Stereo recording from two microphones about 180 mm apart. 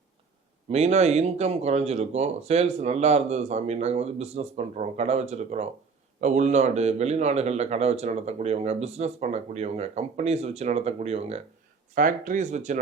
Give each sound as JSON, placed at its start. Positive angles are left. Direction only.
{"t": 0.7, "sound": "a man's voice", "side_deg": -35}
{"t": 11.9, "sound": "speech", "side_deg": -50}